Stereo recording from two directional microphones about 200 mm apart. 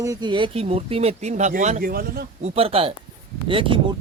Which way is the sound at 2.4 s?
30° right (ahead or behind).